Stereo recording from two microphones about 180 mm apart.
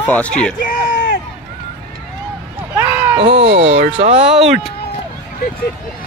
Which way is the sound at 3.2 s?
35° right (ahead or behind).